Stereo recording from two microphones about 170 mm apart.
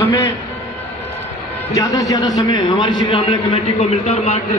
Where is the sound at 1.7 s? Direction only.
20° left (ahead or behind).